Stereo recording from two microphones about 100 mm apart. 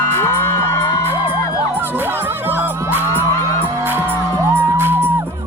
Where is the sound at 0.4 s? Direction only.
30° left (ahead or behind).